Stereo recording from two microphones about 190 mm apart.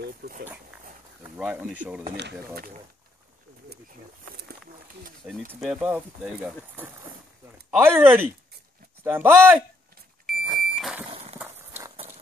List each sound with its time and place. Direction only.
0.0 s speech: 55° right (ahead or behind)
1.3 s speech: 5° right (ahead or behind)
2.1 s speech: 60° right (ahead or behind)
3.9 s a sound: 50° right (ahead or behind)
5.2 s speech: 5° right (ahead or behind)
10.2 s vehicle: centre (ahead or behind)
11.1 s a sound: 30° right (ahead or behind)
11.3 s horse: 10° right (ahead or behind)